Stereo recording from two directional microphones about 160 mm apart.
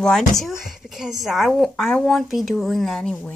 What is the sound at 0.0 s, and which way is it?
Speech, 5° left (ahead or behind).